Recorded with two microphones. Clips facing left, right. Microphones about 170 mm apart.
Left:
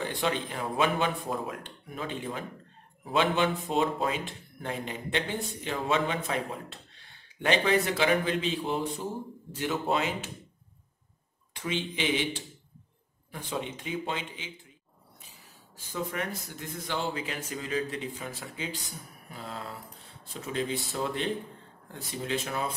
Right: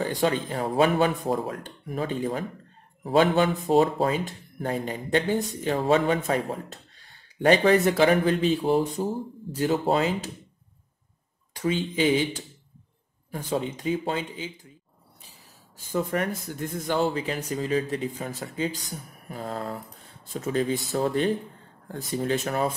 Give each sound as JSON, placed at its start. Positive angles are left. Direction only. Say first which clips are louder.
{"t": 0.0, "sound": "speech", "louder": "right 5 dB", "side_deg": -40}
{"t": 11.5, "sound": "speech", "louder": "right 7 dB", "side_deg": -40}
{"t": 15.9, "sound": "speech", "louder": "right 7 dB", "side_deg": -50}